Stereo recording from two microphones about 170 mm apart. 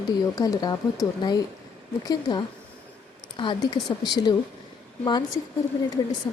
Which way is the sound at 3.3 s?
30° left (ahead or behind).